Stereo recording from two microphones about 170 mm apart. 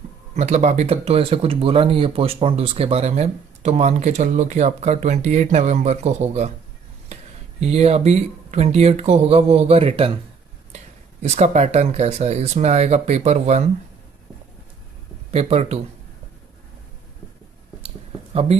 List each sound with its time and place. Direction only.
0.3 s speech: 40° right (ahead or behind)
7.6 s speech: 40° right (ahead or behind)
11.2 s speech: 45° right (ahead or behind)
15.3 s speech: 40° right (ahead or behind)
17.8 s a sound: 35° right (ahead or behind)